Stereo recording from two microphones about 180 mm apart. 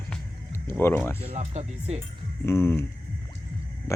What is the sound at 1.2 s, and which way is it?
Speech, 35° right (ahead or behind).